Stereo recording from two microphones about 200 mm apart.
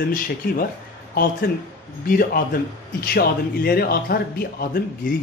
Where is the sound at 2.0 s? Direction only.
45° left (ahead or behind).